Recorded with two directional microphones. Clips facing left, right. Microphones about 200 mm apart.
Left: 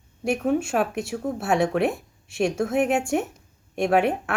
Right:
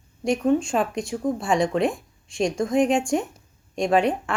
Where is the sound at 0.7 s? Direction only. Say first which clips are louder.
Even; 5° left (ahead or behind).